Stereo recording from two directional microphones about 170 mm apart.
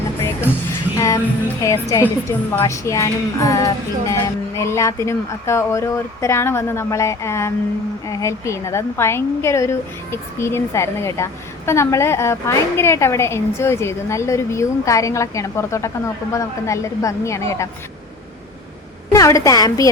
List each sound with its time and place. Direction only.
0.7 s music: 20° left (ahead or behind)
1.6 s a woman's voice: 15° left (ahead or behind)
19.1 s a woman's voice: 20° left (ahead or behind)